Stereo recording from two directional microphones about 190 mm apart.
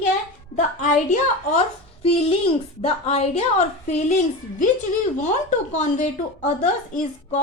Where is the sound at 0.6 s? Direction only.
40° left (ahead or behind).